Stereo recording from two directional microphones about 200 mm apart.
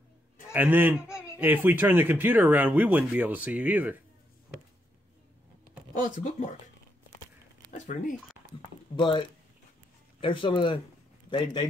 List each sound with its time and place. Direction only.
0.5 s speech: 10° right (ahead or behind)
5.9 s speech: 40° left (ahead or behind)
7.7 s speech: 40° left (ahead or behind)
8.9 s speech: 25° left (ahead or behind)
10.2 s a man's voice: 25° left (ahead or behind)